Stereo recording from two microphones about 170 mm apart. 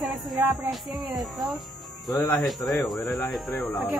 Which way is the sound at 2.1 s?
15° left (ahead or behind).